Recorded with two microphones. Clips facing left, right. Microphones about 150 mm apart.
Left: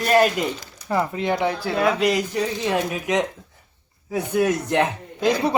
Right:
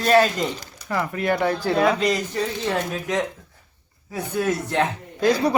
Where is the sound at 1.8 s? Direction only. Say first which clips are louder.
Left 2 dB; 5° left (ahead or behind).